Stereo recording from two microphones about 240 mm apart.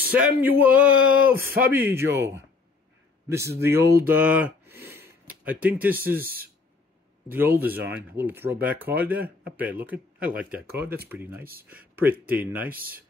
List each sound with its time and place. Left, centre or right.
0.0 s speech: centre
4.9 s a sound: centre
7.2 s speech: centre
12.6 s speech: right